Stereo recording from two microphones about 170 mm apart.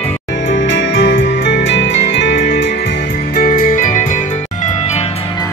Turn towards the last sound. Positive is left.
turn(degrees=50)  # may be behind; listen again after turning